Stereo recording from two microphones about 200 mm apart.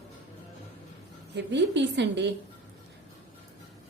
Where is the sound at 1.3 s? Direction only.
60° right (ahead or behind).